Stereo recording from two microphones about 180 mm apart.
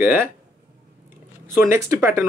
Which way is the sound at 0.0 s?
10° right (ahead or behind).